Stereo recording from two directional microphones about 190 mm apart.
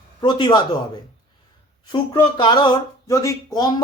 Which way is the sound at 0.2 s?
25° left (ahead or behind).